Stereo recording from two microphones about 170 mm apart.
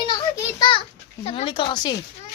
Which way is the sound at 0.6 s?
30° left (ahead or behind).